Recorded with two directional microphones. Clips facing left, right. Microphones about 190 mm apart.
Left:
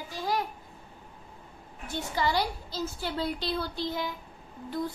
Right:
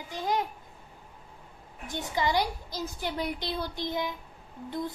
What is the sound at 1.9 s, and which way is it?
Speech, 20° right (ahead or behind).